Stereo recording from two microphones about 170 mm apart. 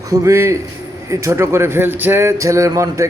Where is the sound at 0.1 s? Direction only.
20° right (ahead or behind).